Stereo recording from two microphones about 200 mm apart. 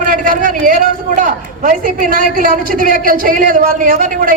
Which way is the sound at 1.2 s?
45° right (ahead or behind).